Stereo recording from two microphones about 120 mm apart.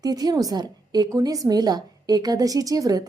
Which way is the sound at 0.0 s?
30° right (ahead or behind).